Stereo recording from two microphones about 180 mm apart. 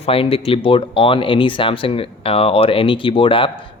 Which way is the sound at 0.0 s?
30° left (ahead or behind).